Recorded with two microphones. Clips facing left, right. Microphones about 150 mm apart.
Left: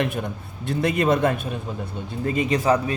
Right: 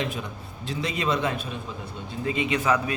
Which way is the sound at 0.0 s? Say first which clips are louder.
Left 5 dB; 60° left (ahead or behind).